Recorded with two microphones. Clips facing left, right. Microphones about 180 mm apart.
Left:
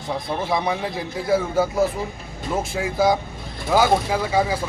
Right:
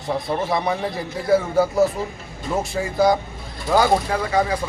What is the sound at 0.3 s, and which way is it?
A man's voice, centre (ahead or behind).